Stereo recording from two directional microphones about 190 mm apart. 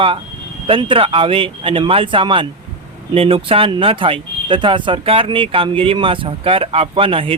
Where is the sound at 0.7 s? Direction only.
25° right (ahead or behind).